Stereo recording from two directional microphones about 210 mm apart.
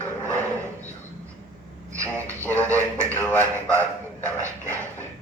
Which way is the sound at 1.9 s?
15° right (ahead or behind).